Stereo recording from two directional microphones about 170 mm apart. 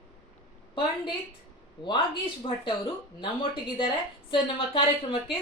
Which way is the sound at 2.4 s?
30° left (ahead or behind).